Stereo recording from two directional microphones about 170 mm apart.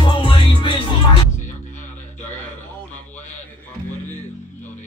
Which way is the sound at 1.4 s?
45° left (ahead or behind).